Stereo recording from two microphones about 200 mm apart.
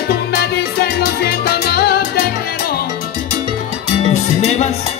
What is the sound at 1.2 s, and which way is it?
Salsa music, 50° left (ahead or behind).